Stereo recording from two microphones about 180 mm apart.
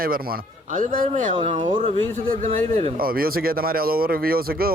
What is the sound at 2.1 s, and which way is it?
A man's voice, 45° right (ahead or behind).